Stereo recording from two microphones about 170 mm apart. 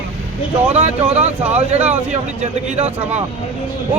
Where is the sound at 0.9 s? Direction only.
40° right (ahead or behind).